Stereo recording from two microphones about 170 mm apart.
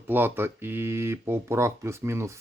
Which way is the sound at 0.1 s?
10° right (ahead or behind).